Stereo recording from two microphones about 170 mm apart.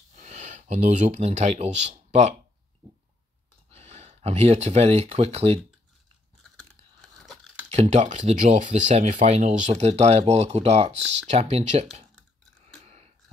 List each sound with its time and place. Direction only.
0.1 s speech: 45° right (ahead or behind)
3.7 s speech: 40° right (ahead or behind)
7.7 s speech: 40° right (ahead or behind)
12.8 s a sound: 35° right (ahead or behind)